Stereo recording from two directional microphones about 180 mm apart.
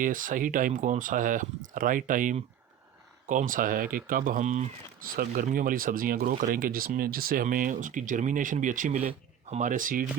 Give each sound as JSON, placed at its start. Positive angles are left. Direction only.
{"t": 0.0, "sound": "speech", "side_deg": -50}